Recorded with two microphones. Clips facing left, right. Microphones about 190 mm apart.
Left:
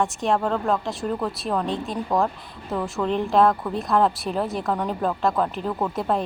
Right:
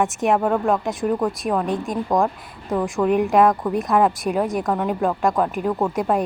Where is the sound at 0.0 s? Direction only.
15° right (ahead or behind).